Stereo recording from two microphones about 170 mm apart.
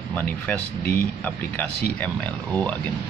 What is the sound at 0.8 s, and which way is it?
Speech, 55° left (ahead or behind).